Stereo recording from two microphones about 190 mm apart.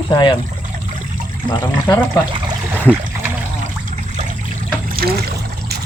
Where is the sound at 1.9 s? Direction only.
20° left (ahead or behind).